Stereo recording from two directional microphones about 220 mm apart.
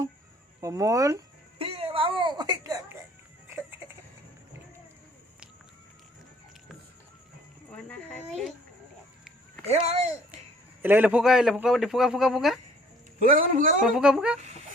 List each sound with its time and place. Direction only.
0.6 s a sound: 15° right (ahead or behind)
9.6 s speech: 30° right (ahead or behind)
10.8 s a man's voice: 10° right (ahead or behind)
13.1 s a man's voice: 35° right (ahead or behind)
13.8 s a man's voice: 5° right (ahead or behind)